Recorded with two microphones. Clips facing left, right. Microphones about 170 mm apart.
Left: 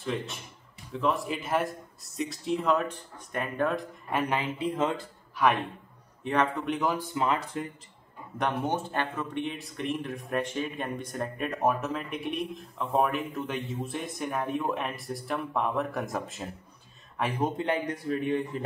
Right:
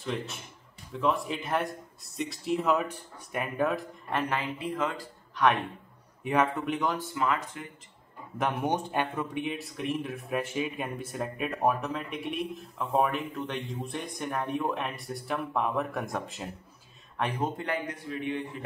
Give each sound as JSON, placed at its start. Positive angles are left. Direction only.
{"t": 0.0, "sound": "speech", "side_deg": 0}
{"t": 4.1, "sound": "speech", "side_deg": 15}
{"t": 5.3, "sound": "speech", "side_deg": 0}
{"t": 6.2, "sound": "speech", "side_deg": -10}
{"t": 7.0, "sound": "speech", "side_deg": 20}
{"t": 7.5, "sound": "speech", "side_deg": 35}
{"t": 8.6, "sound": "speech", "side_deg": -15}
{"t": 17.8, "sound": "a man's voice", "side_deg": 45}